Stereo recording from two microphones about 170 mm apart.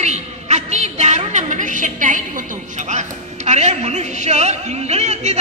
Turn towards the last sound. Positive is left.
turn(degrees=-40)  # may be behind; listen again after turning